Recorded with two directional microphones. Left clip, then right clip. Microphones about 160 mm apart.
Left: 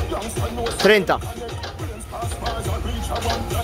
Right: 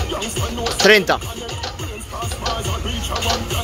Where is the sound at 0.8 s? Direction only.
5° left (ahead or behind).